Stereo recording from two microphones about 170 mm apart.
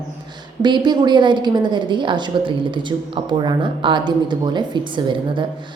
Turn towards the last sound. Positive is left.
turn(degrees=-25)  # may be behind; listen again after turning